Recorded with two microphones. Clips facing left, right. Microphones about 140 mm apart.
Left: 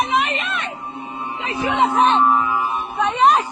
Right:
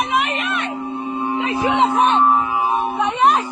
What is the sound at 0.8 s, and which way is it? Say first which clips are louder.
Music: right 7 dB; 75° right (ahead or behind).